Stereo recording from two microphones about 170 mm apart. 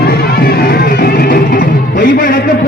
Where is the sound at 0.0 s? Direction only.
65° left (ahead or behind).